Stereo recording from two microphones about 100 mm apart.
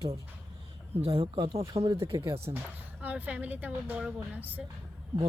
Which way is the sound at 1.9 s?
60° right (ahead or behind).